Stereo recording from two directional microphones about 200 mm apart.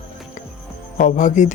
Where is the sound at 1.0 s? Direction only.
40° left (ahead or behind).